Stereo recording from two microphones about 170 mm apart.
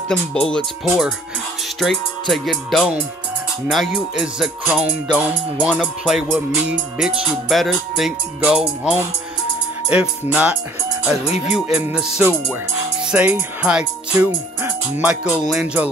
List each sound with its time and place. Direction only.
0.1 s music: 5° left (ahead or behind)
6.2 s music: 15° right (ahead or behind)
11.2 s speech: 40° left (ahead or behind)
11.5 s music: 10° right (ahead or behind)